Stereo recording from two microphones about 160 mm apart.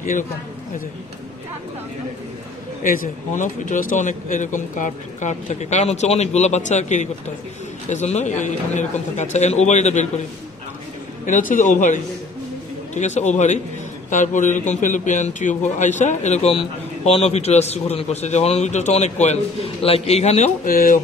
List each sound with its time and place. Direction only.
2.8 s a man's voice: 60° left (ahead or behind)
11.2 s a man's voice: 55° left (ahead or behind)
20.7 s speech: 60° left (ahead or behind)